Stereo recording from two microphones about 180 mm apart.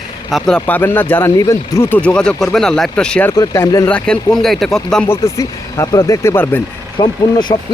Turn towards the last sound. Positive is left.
turn(degrees=25)  # may be behind; listen again after turning